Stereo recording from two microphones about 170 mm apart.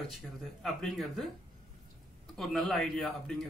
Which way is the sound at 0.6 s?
Centre (ahead or behind).